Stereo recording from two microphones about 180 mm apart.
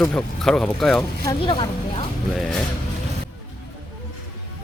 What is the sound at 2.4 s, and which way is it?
Speech, 5° left (ahead or behind).